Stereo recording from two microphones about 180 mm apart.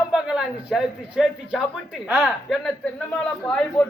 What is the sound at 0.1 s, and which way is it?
A man's voice, 5° right (ahead or behind).